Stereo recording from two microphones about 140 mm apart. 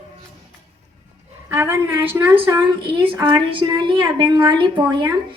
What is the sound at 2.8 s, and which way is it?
A woman's voice, 35° right (ahead or behind).